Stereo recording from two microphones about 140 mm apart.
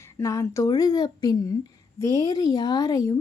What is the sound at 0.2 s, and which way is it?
Speech, 25° left (ahead or behind).